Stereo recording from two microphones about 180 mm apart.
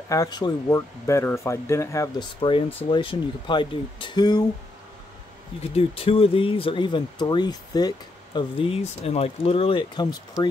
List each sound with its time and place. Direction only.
0.1 s speech: 20° left (ahead or behind)
2.9 s speech: 25° left (ahead or behind)
5.6 s speech: 35° left (ahead or behind)